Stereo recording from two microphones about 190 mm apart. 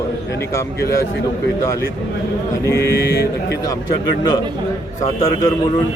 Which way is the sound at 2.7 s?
60° left (ahead or behind).